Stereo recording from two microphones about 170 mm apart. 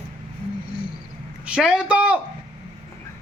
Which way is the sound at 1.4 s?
5° right (ahead or behind).